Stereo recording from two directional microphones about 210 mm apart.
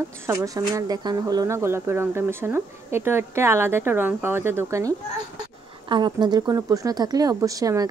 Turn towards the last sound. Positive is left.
turn(degrees=-15)  # may be behind; listen again after turning